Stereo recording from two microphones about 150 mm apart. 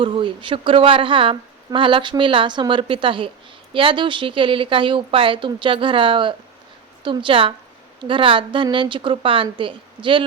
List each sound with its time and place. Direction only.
0.0 s a woman's voice: 35° right (ahead or behind)